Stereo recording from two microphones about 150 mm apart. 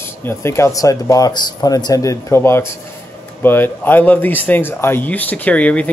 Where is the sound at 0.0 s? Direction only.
15° left (ahead or behind).